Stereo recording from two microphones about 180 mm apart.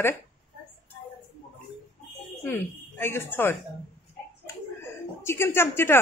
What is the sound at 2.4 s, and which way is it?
Speech, 10° left (ahead or behind).